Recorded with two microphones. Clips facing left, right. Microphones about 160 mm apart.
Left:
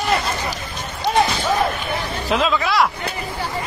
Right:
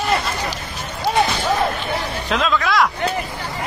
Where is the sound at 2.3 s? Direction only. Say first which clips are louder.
Even; centre (ahead or behind).